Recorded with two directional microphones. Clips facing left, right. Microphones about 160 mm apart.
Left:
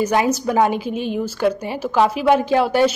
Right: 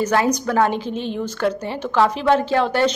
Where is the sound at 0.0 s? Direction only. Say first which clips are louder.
Left 1 dB; 15° left (ahead or behind).